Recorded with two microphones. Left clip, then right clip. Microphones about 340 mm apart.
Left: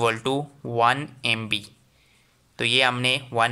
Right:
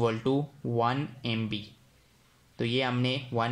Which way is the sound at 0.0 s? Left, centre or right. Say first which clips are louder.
Left 6 dB; left.